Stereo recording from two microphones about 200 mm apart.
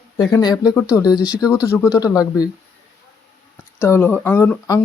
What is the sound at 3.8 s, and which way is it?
Speech, 15° left (ahead or behind).